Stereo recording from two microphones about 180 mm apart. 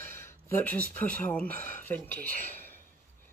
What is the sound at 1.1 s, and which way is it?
Speech, 10° left (ahead or behind).